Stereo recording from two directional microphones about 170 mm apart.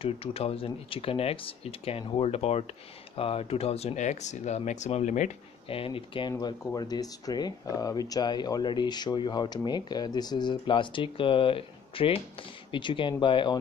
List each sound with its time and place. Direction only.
0.0 s speech: 35° left (ahead or behind)
5.7 s speech: 30° left (ahead or behind)
6.3 s speech: 20° left (ahead or behind)